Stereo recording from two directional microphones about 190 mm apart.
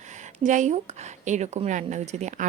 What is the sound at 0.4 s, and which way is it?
Speech, 40° right (ahead or behind).